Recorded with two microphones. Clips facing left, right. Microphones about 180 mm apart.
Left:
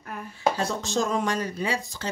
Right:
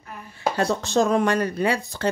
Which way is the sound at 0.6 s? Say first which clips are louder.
Right 6 dB; 60° right (ahead or behind).